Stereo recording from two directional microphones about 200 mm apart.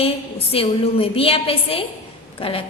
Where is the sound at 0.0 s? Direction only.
30° left (ahead or behind).